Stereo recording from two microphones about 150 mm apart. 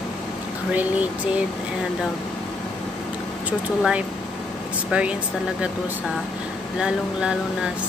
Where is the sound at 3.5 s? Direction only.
10° right (ahead or behind).